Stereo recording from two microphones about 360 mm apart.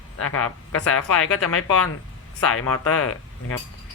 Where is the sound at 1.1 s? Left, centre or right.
Left.